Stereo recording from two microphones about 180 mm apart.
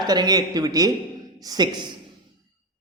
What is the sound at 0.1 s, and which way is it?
A man's voice, 20° right (ahead or behind).